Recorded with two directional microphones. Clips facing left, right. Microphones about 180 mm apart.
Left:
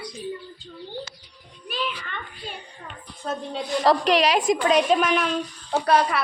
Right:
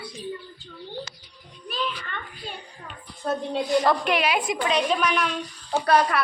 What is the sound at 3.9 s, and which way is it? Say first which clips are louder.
A woman's voice: left 3 dB; 35° left (ahead or behind).